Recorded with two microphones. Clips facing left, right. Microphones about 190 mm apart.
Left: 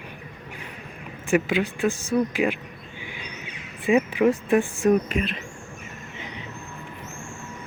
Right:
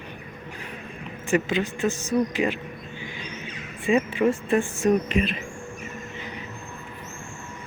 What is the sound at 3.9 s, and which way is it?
Speech, 15° left (ahead or behind).